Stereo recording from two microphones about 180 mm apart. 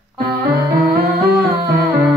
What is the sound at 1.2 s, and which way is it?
Humming, 60° right (ahead or behind).